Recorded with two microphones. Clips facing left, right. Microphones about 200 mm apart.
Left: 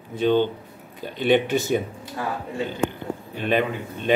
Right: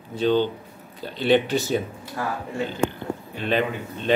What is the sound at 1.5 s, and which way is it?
Speech, 20° left (ahead or behind).